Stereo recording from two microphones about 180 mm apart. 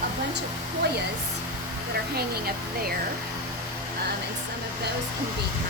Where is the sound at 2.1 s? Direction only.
60° right (ahead or behind).